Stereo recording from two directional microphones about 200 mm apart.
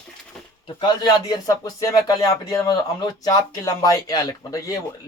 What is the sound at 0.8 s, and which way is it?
Speech, 20° left (ahead or behind).